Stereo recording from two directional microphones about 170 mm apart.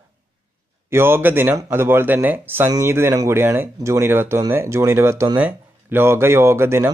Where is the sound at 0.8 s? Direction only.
15° right (ahead or behind).